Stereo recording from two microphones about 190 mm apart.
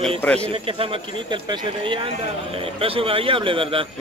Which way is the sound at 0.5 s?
30° right (ahead or behind).